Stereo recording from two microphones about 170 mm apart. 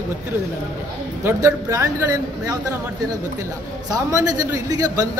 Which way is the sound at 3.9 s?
20° right (ahead or behind).